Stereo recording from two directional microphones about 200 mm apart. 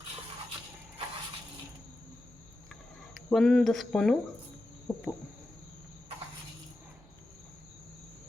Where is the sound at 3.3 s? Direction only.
5° left (ahead or behind).